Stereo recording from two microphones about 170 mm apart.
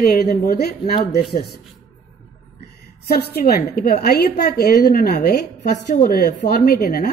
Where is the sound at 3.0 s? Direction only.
65° left (ahead or behind).